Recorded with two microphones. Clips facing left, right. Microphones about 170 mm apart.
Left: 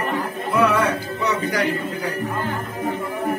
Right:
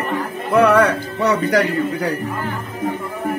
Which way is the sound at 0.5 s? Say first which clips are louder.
Right 6 dB; 65° right (ahead or behind).